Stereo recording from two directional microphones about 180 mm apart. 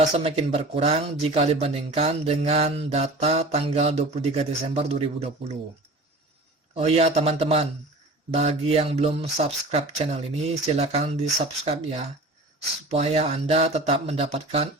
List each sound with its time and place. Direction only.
0.2 s speech: 35° right (ahead or behind)
6.7 s speech: 35° right (ahead or behind)